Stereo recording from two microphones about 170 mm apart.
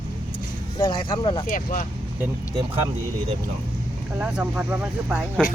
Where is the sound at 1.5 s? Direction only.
55° left (ahead or behind).